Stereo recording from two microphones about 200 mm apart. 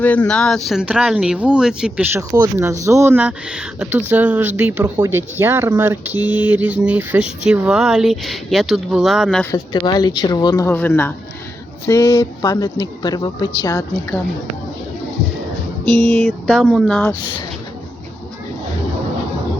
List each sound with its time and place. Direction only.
0.0 s speech: 5° left (ahead or behind)
9.5 s a woman's voice: 20° left (ahead or behind)
16.1 s speech: centre (ahead or behind)